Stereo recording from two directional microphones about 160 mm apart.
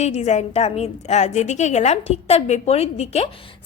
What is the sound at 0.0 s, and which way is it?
A woman's voice, 45° left (ahead or behind).